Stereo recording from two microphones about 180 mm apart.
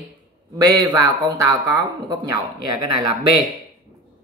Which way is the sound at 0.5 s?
20° right (ahead or behind).